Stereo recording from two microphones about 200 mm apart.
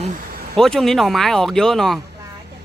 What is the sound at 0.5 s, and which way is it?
Speech, centre (ahead or behind).